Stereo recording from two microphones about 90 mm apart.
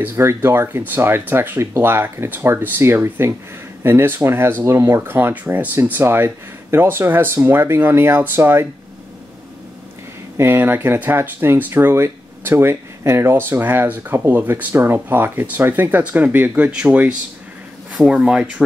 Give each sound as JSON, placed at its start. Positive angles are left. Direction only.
{"t": 0.0, "sound": "speech", "side_deg": -25}
{"t": 10.3, "sound": "speech", "side_deg": -25}